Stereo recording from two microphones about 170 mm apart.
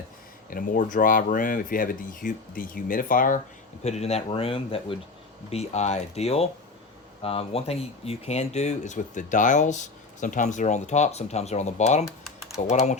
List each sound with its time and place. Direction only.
0.5 s speech: 50° left (ahead or behind)
3.8 s speech: 40° left (ahead or behind)